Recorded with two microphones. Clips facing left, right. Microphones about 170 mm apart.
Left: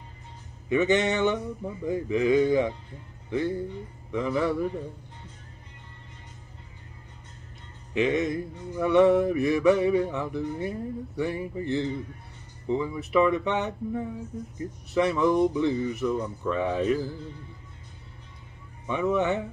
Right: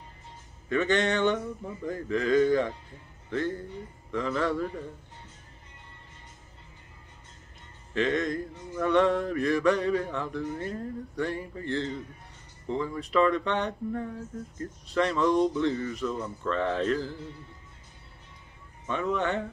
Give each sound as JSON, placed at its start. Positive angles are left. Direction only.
{"t": 0.7, "sound": "mantra", "side_deg": 10}
{"t": 7.9, "sound": "mantra", "side_deg": 10}
{"t": 18.9, "sound": "mantra", "side_deg": 15}